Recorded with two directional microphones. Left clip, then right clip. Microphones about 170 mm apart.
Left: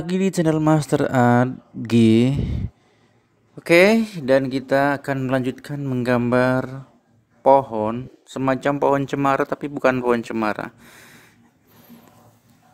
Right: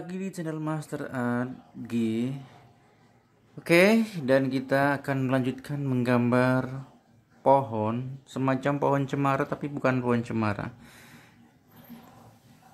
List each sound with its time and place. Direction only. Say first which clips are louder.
0.0 s speech: left 15 dB; 50° left (ahead or behind)
3.5 s a man's voice: left 7 dB; 45° left (ahead or behind)